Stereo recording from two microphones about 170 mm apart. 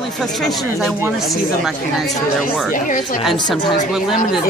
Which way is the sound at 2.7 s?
50° left (ahead or behind).